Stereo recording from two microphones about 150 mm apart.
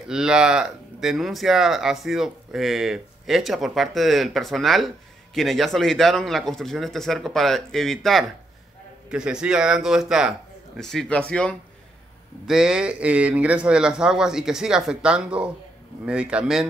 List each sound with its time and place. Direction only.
0.1 s a man's voice: 5° right (ahead or behind)
12.4 s a man's voice: 5° right (ahead or behind)